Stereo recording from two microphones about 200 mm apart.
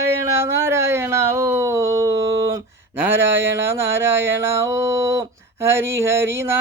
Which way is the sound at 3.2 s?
65° right (ahead or behind).